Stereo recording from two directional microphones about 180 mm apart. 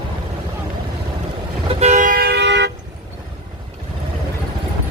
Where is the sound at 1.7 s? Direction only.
40° right (ahead or behind); by 2.7 s 70° right (ahead or behind).